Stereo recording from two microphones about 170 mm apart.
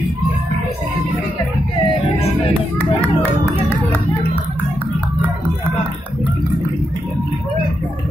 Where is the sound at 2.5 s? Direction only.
10° left (ahead or behind).